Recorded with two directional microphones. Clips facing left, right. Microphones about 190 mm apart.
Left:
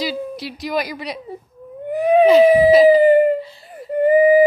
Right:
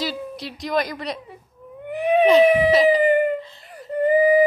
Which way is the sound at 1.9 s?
35° left (ahead or behind).